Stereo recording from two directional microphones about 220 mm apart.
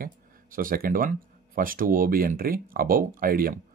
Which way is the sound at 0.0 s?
40° right (ahead or behind).